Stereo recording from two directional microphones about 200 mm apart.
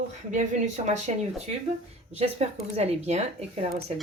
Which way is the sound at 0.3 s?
35° right (ahead or behind).